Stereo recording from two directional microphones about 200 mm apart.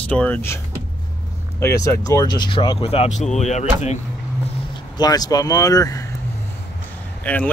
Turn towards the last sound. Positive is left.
turn(degrees=5)  # may be behind; listen again after turning